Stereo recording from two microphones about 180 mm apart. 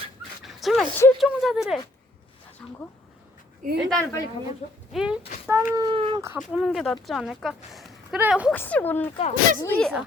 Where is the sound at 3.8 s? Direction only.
5° left (ahead or behind).